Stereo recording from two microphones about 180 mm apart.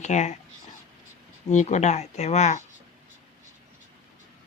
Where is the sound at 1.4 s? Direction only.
40° left (ahead or behind).